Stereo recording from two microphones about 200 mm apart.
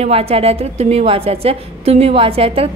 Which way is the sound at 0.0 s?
30° right (ahead or behind).